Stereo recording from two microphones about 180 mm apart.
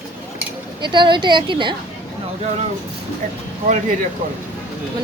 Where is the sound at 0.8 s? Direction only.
25° right (ahead or behind).